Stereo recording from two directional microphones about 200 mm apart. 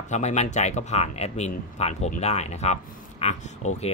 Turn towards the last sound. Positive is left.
turn(degrees=30)  # may be behind; listen again after turning